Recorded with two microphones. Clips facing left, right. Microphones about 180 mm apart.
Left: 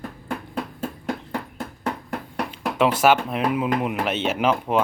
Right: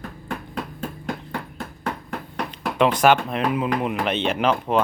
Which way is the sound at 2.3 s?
5° left (ahead or behind).